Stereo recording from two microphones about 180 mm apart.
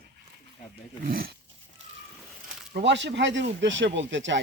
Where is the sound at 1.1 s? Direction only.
55° right (ahead or behind).